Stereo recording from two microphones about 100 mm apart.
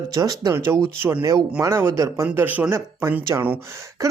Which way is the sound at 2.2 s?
15° right (ahead or behind).